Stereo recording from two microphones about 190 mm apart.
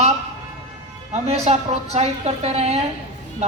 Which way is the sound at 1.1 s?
35° right (ahead or behind).